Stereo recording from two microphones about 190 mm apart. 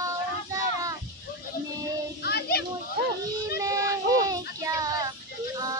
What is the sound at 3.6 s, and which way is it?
Child singing, 20° right (ahead or behind).